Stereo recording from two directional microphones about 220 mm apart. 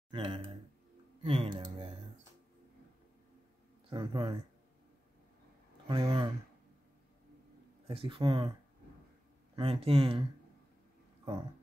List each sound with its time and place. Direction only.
0.1 s a man's voice: 25° right (ahead or behind)
3.9 s speech: 20° right (ahead or behind)
5.9 s speech: 20° right (ahead or behind)
7.8 s speech: 25° right (ahead or behind)
9.6 s speech: 25° right (ahead or behind)